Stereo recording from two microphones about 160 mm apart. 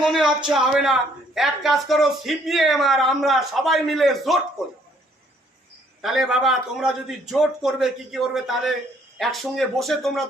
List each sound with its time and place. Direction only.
0.0 s speech: centre (ahead or behind)
0.3 s speech: 30° right (ahead or behind)
0.5 s speech: centre (ahead or behind)
6.0 s speech: centre (ahead or behind)